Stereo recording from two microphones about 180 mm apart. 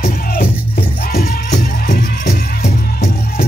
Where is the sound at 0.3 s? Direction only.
60° left (ahead or behind).